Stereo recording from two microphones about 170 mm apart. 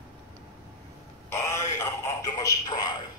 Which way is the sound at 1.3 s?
15° left (ahead or behind).